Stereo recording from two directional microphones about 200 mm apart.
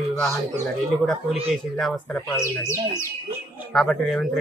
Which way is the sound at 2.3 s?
15° left (ahead or behind).